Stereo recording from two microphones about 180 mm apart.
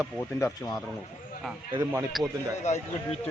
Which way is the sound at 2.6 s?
40° left (ahead or behind).